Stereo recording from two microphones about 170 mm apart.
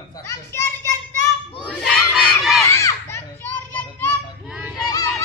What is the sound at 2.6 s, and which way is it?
A child's voice, 20° left (ahead or behind).